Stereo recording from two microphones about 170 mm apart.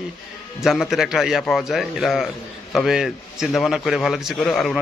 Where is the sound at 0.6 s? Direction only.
Centre (ahead or behind).